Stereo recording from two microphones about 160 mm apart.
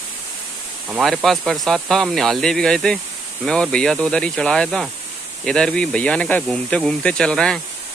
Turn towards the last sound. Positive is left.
turn(degrees=5)  # may be behind; listen again after turning